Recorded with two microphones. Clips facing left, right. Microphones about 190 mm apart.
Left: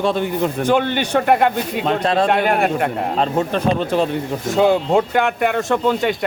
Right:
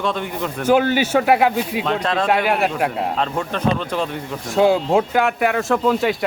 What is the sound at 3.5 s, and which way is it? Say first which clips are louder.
Speech: left 3 dB; 35° left (ahead or behind).